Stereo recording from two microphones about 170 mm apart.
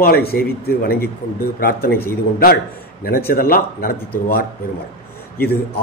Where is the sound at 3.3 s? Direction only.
60° left (ahead or behind).